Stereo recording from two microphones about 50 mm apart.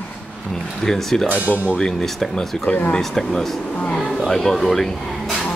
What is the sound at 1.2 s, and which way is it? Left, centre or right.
Speech, right.